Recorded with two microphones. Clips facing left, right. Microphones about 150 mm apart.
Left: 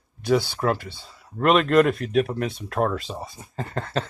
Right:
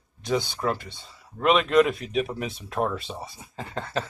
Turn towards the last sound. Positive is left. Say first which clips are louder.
# left 3 dB
turn(degrees=0)  # may be behind; listen again after turning